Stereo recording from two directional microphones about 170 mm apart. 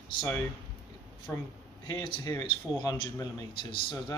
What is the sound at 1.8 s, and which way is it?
A man's voice, 20° left (ahead or behind).